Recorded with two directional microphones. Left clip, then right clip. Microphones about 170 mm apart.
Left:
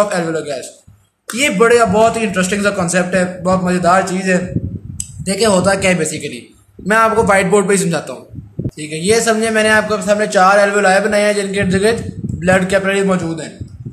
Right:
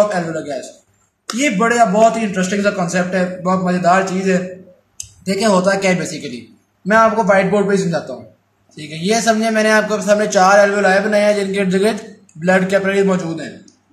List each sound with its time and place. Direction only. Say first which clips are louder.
0.0 s a man's voice: left 1 dB; 15° left (ahead or behind)
7.2 s a man's voice: left 2 dB; 20° left (ahead or behind); by 13.5 s 5° left (ahead or behind)